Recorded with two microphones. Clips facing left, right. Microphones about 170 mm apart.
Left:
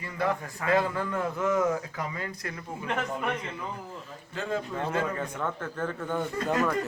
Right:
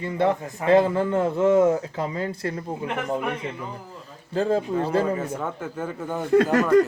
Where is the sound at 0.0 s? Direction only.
25° right (ahead or behind).